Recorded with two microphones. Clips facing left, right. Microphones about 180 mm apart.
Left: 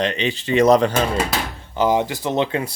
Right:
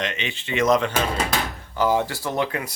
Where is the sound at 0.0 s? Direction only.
35° left (ahead or behind).